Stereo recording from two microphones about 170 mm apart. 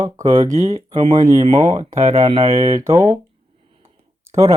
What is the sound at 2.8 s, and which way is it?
Speech, 15° right (ahead or behind).